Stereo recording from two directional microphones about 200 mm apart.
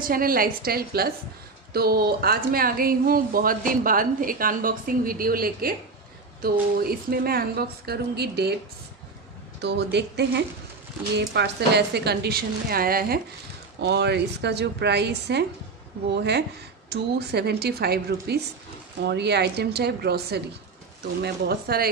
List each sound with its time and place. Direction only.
0.0 s speech: 45° right (ahead or behind)
6.8 s speech: 50° right (ahead or behind)
9.6 s a woman's voice: 60° right (ahead or behind)
13.7 s a woman's voice: 60° right (ahead or behind)